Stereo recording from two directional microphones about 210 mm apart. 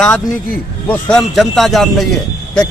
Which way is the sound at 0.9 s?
5° left (ahead or behind).